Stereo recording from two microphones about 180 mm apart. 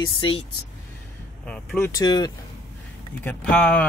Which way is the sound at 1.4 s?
5° left (ahead or behind).